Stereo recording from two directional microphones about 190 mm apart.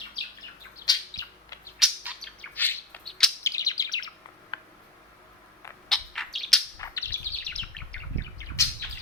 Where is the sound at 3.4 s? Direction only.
20° left (ahead or behind).